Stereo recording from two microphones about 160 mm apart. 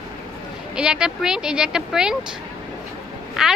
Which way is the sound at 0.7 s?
5° right (ahead or behind).